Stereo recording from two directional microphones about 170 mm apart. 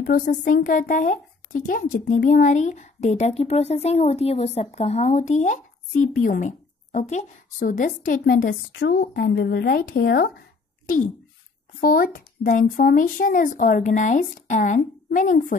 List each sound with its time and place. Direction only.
0.0 s speech: 55° left (ahead or behind)
11.8 s speech: 60° left (ahead or behind)